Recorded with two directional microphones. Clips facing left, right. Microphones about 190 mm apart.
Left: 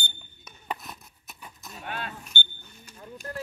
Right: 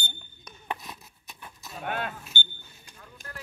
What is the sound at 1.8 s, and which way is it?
Speech, 55° right (ahead or behind).